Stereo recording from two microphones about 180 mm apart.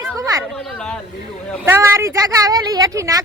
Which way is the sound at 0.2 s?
20° right (ahead or behind).